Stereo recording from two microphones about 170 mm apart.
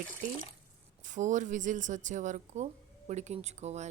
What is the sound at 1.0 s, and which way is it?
Speech, 45° right (ahead or behind).